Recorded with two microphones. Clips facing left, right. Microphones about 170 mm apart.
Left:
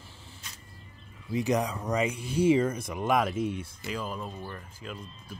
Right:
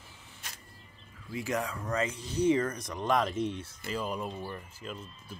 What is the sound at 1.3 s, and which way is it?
Speech, 20° left (ahead or behind).